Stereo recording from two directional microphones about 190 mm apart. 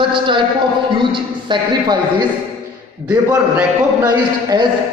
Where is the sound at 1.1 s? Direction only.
25° right (ahead or behind).